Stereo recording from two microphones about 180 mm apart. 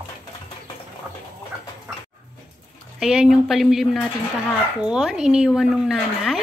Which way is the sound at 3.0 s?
5° right (ahead or behind).